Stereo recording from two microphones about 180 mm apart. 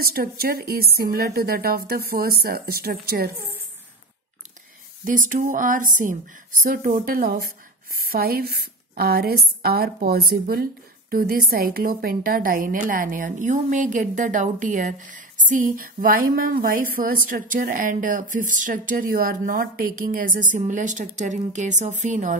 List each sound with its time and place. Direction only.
0.0 s a woman's voice: 55° right (ahead or behind)
5.0 s a woman's voice: 45° right (ahead or behind)